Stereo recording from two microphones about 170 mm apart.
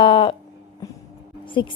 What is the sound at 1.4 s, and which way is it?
Speech, 30° left (ahead or behind).